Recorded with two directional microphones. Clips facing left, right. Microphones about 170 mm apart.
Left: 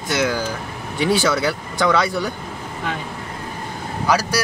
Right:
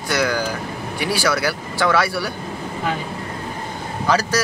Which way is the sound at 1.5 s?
Centre (ahead or behind).